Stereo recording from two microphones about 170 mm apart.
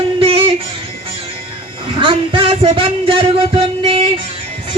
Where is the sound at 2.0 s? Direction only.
30° right (ahead or behind).